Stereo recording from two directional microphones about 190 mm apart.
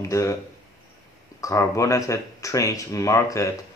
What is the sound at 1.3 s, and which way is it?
Speech, 15° left (ahead or behind).